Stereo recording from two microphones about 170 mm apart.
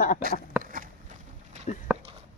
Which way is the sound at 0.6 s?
55° right (ahead or behind).